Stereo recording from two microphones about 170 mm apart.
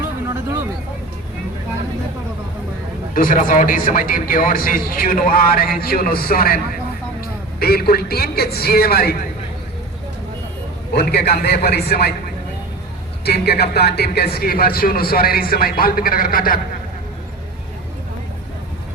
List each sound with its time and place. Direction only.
3.2 s a man's voice: 55° left (ahead or behind)
10.9 s a man's voice: 70° left (ahead or behind)
13.2 s speech: 70° left (ahead or behind)